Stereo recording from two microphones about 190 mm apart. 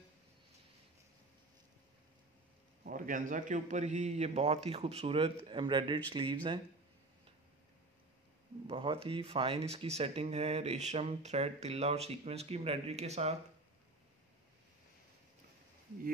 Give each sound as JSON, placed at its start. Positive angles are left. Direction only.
{"t": 2.8, "sound": "speech", "side_deg": -45}
{"t": 8.6, "sound": "speech", "side_deg": -30}